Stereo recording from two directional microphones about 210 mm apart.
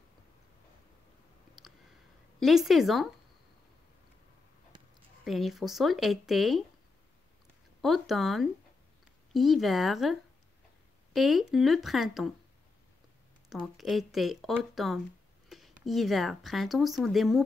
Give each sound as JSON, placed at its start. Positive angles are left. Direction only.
{"t": 1.6, "sound": "a sound", "side_deg": 0}
{"t": 2.4, "sound": "speech", "side_deg": 0}
{"t": 5.2, "sound": "speech", "side_deg": 0}
{"t": 7.8, "sound": "speech", "side_deg": 0}
{"t": 11.1, "sound": "speech", "side_deg": 0}
{"t": 13.5, "sound": "speech", "side_deg": 0}